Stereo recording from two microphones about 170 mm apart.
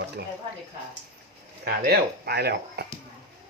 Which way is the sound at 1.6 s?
65° right (ahead or behind).